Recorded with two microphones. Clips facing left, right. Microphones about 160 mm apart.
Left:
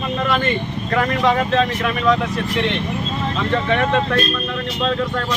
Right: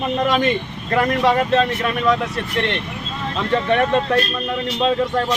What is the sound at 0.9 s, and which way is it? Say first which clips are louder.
Speech: right 1 dB; 10° right (ahead or behind).